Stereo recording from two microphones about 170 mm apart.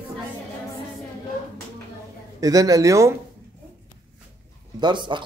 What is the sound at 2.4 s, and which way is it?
Speech, 20° right (ahead or behind).